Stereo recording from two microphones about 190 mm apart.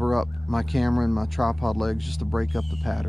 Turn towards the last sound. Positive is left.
turn(degrees=0)  # may be behind; listen again after turning